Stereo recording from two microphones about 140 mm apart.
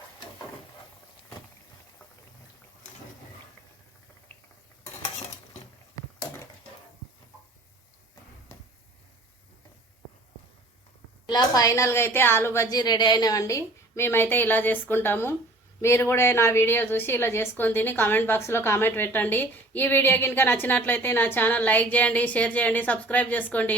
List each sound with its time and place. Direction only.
11.3 s a woman's voice: 25° left (ahead or behind)
12.7 s a woman's voice: 30° left (ahead or behind); by 23.7 s 10° left (ahead or behind)